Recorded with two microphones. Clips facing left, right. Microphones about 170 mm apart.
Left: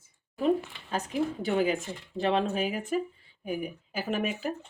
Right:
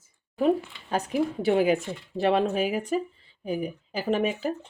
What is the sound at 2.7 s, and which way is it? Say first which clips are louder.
Speech: right 3 dB; 40° right (ahead or behind).